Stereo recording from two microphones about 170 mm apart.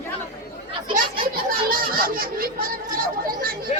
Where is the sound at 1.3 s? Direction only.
60° right (ahead or behind).